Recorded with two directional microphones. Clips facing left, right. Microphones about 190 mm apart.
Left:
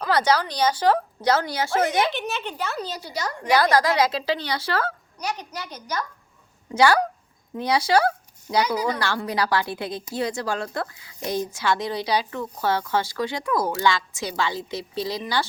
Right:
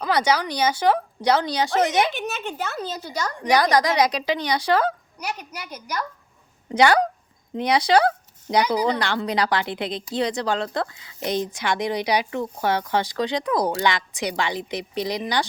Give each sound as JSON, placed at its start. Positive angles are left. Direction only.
{"t": 0.0, "sound": "speech", "side_deg": -15}
{"t": 2.1, "sound": "speech", "side_deg": -45}
{"t": 3.5, "sound": "speech", "side_deg": -15}